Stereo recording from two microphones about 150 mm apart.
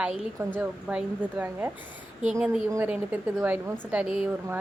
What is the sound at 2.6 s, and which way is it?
A woman's voice, 20° right (ahead or behind).